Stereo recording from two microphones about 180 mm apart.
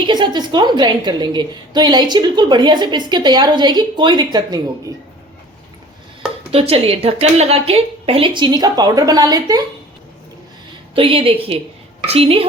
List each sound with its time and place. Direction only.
0.1 s a woman's voice: 25° right (ahead or behind)
6.5 s a woman's voice: 35° right (ahead or behind)
10.9 s a woman's voice: 30° right (ahead or behind)